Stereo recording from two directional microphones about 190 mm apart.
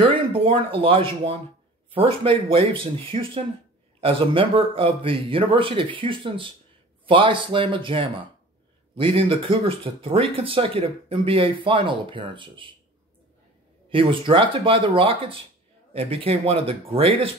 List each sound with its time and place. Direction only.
0.3 s speech: 30° right (ahead or behind)
13.8 s speech: 25° right (ahead or behind)